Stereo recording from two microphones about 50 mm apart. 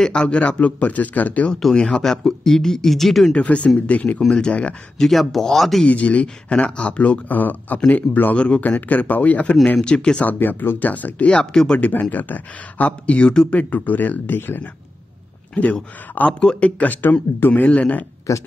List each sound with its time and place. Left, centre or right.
0.0 s speech: centre
1.5 s speech: centre
3.3 s speech: left
4.9 s speech: centre
5.9 s speech: left
10.2 s speech: left
10.9 s speech: left
11.2 s speech: centre
11.8 s speech: left
13.6 s speech: left
15.5 s speech: left
18.3 s speech: left